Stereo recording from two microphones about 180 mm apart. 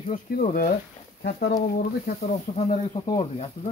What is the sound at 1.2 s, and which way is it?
Speech, 65° left (ahead or behind).